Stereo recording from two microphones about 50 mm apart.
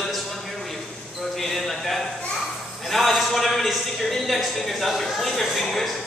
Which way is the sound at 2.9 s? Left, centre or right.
Centre.